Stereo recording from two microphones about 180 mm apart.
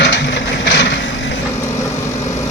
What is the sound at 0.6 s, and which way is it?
Vehicle, 75° left (ahead or behind).